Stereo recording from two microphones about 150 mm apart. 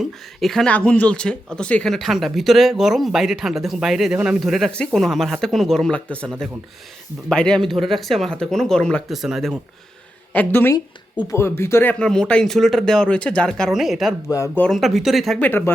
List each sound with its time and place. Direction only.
0.0 s speech: centre (ahead or behind)
10.3 s speech: 15° left (ahead or behind)
14.3 s speech: 20° left (ahead or behind)
14.6 s speech: centre (ahead or behind)
15.4 s speech: 15° left (ahead or behind)